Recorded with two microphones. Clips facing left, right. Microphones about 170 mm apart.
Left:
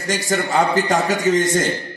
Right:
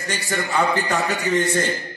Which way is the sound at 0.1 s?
45° left (ahead or behind).